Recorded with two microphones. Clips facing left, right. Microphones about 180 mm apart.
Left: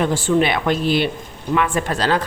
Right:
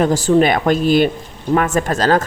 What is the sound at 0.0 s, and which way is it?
A woman's voice, 40° right (ahead or behind).